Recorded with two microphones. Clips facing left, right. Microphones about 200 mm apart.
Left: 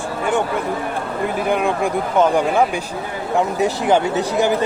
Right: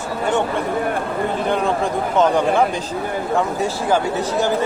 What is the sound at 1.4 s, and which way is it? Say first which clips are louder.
Speech: left 2 dB; 10° left (ahead or behind).